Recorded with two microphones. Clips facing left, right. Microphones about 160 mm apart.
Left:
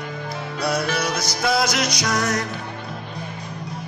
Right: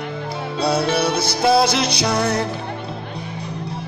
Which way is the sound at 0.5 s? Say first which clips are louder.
Right 5 dB; 30° right (ahead or behind).